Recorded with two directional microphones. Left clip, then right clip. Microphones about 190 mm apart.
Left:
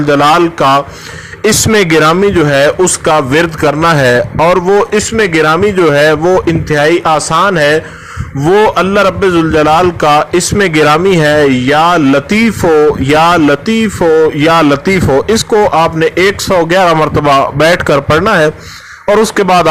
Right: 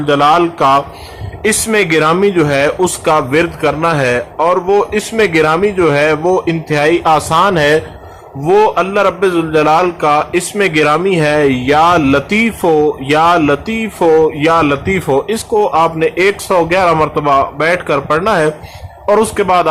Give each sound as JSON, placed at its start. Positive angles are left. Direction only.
{"t": 0.0, "sound": "a man's voice", "side_deg": 25}
{"t": 1.4, "sound": "a man's voice", "side_deg": 30}
{"t": 8.5, "sound": "a man's voice", "side_deg": 30}